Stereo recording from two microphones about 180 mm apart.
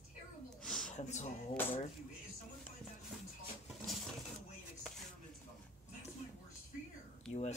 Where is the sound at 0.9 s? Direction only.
40° left (ahead or behind).